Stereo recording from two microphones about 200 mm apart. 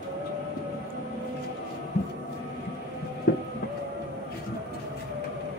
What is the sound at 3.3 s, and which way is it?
Train, 50° left (ahead or behind).